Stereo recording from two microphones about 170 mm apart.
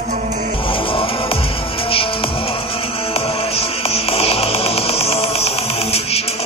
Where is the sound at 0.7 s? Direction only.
30° left (ahead or behind).